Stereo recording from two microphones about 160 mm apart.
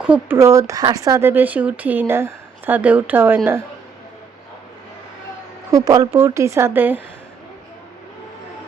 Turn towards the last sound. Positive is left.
turn(degrees=-10)  # may be behind; listen again after turning